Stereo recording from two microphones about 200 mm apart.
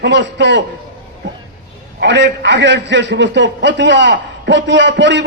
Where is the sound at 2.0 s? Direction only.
60° right (ahead or behind).